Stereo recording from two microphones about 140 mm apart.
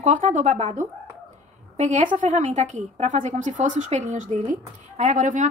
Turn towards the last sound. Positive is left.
turn(degrees=-65)  # may be behind; listen again after turning